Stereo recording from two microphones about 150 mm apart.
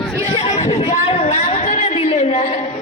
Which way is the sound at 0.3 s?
45° left (ahead or behind).